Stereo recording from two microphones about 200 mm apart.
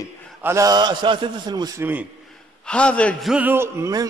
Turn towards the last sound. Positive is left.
turn(degrees=-15)  # may be behind; listen again after turning